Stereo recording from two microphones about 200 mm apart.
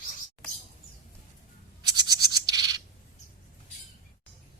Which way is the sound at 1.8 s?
20° right (ahead or behind).